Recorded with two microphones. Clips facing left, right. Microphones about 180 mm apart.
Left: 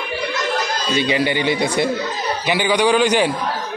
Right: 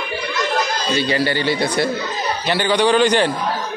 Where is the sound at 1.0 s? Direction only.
15° left (ahead or behind).